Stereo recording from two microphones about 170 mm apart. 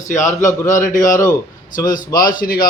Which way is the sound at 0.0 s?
45° left (ahead or behind).